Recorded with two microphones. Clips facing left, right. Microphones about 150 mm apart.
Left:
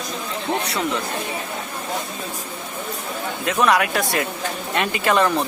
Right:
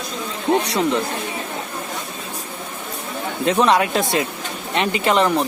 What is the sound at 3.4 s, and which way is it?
Speech, 30° right (ahead or behind).